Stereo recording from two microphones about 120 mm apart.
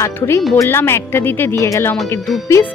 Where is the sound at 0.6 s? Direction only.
20° left (ahead or behind).